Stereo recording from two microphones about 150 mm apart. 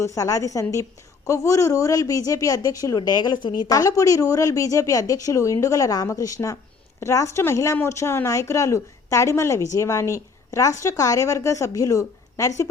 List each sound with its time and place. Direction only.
0.0 s speech: 20° left (ahead or behind)